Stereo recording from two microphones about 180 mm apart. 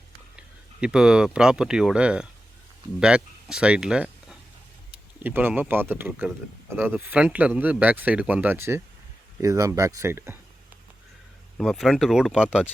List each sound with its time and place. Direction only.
0.3 s speech: 5° right (ahead or behind)
11.5 s speech: centre (ahead or behind)